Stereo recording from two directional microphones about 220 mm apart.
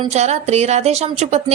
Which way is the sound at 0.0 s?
30° right (ahead or behind).